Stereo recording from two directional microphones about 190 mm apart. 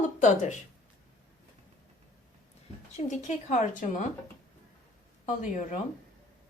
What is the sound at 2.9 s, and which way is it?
Speech, 40° left (ahead or behind).